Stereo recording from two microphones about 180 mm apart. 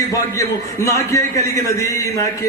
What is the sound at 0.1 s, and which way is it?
A man's voice, 15° left (ahead or behind).